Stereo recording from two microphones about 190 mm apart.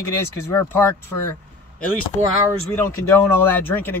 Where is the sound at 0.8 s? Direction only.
10° left (ahead or behind).